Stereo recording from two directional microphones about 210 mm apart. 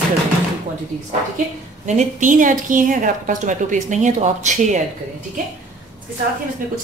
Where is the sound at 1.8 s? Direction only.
35° right (ahead or behind).